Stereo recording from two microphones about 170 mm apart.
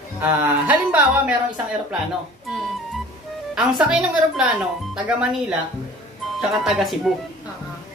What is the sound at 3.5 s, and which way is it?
Speech, 5° right (ahead or behind).